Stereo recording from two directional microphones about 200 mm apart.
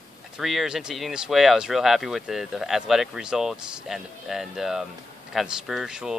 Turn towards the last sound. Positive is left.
turn(degrees=-5)  # may be behind; listen again after turning